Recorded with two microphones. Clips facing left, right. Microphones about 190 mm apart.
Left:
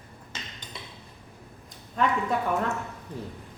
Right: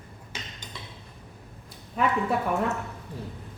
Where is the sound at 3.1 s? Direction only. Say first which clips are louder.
Left 3 dB; 20° left (ahead or behind).